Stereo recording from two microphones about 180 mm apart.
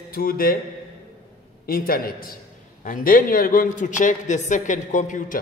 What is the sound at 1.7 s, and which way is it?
A man's voice, 55° left (ahead or behind).